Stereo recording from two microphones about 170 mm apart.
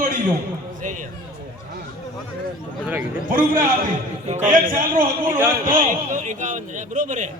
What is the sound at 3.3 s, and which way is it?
Speech, 55° right (ahead or behind).